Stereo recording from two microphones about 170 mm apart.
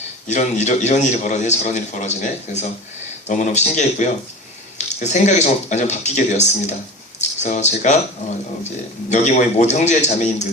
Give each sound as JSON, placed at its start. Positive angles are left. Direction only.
{"t": 0.3, "sound": "a man's voice", "side_deg": 45}
{"t": 9.0, "sound": "a man's voice", "side_deg": 45}